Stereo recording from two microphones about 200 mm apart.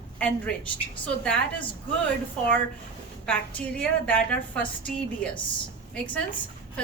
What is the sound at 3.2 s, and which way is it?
A woman's voice, 5° left (ahead or behind).